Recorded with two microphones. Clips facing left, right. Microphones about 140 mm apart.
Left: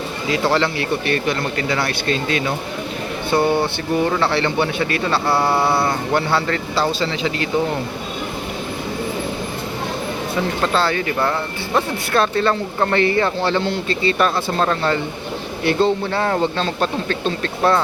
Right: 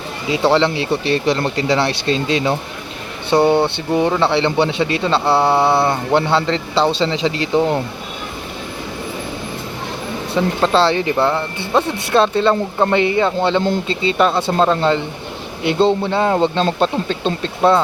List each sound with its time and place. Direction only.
0.3 s a man's voice: 20° right (ahead or behind)
10.6 s a man's voice: 30° right (ahead or behind)